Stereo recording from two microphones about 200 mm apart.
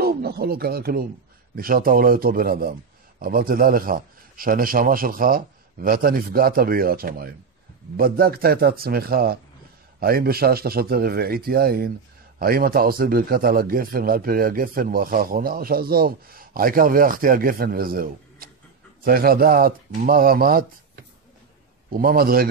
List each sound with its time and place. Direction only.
0.0 s a man's voice: 50° right (ahead or behind)